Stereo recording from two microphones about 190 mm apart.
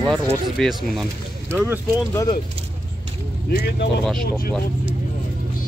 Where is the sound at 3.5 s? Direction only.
55° left (ahead or behind).